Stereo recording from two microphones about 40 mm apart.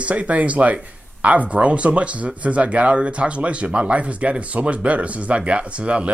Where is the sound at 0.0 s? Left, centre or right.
Right.